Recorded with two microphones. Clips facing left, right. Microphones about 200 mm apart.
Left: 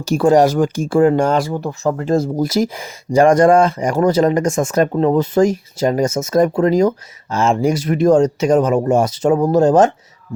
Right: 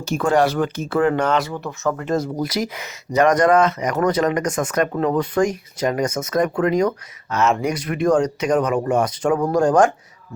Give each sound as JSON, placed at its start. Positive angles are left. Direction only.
{"t": 0.1, "sound": "speech", "side_deg": 35}
{"t": 0.9, "sound": "speech", "side_deg": 30}